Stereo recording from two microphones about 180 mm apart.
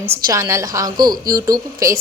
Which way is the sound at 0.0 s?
15° right (ahead or behind).